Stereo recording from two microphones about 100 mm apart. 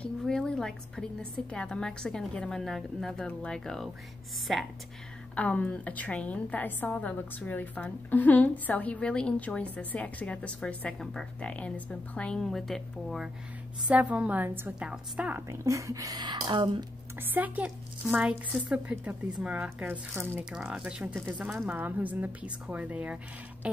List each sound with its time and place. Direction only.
0.2 s a sound: 5° left (ahead or behind)
1.5 s a woman's voice: 10° left (ahead or behind)
5.3 s a woman's voice: 15° left (ahead or behind)
13.8 s speech: 15° right (ahead or behind)
15.4 s speech: 30° right (ahead or behind); by 16.7 s 50° right (ahead or behind)
17.2 s speech: 20° right (ahead or behind)
21.6 s speech: 20° right (ahead or behind)